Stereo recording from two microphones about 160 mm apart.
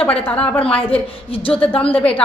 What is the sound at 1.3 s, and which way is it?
Speech, 35° left (ahead or behind).